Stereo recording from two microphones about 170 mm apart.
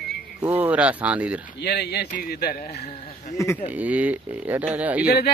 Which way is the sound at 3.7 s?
10° right (ahead or behind).